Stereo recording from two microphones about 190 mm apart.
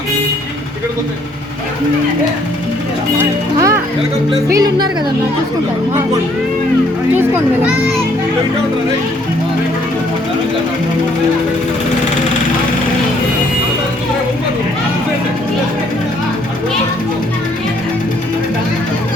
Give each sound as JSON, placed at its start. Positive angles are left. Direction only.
{"t": 3.2, "sound": "speech", "side_deg": -15}